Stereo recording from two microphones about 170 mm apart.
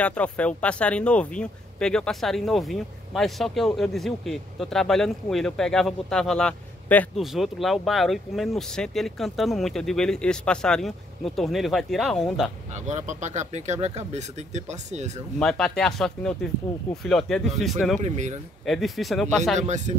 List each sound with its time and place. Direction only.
0.0 s speech: 10° left (ahead or behind)
12.7 s speech: 45° right (ahead or behind)
15.3 s speech: 5° left (ahead or behind)
18.0 s speech: 45° right (ahead or behind)
18.7 s speech: centre (ahead or behind)
19.6 s speech: 45° right (ahead or behind)